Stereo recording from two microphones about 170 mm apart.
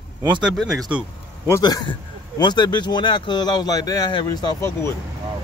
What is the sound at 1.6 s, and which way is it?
Speech, 25° left (ahead or behind).